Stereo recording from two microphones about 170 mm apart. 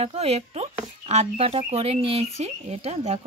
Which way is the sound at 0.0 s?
35° right (ahead or behind).